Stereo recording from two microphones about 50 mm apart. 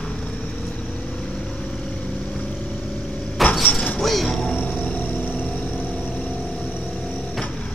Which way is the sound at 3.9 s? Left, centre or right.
Centre.